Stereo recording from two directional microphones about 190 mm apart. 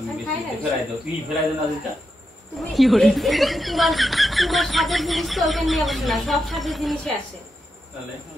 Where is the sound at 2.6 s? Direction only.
Centre (ahead or behind).